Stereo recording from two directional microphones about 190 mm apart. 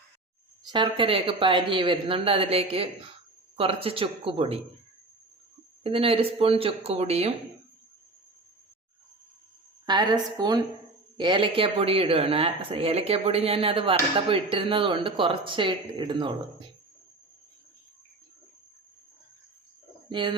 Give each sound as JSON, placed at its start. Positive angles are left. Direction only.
{"t": 0.6, "sound": "speech", "side_deg": -25}
{"t": 5.8, "sound": "speech", "side_deg": -30}
{"t": 9.8, "sound": "speech", "side_deg": -20}
{"t": 20.1, "sound": "speech", "side_deg": -25}